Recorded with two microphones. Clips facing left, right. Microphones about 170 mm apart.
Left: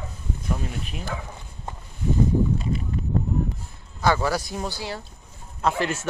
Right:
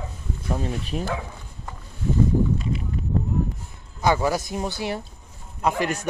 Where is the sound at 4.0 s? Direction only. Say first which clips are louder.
Right 1 dB; 15° right (ahead or behind).